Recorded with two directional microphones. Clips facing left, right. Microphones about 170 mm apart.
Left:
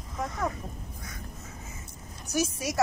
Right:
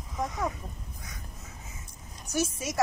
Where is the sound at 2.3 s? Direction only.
10° left (ahead or behind).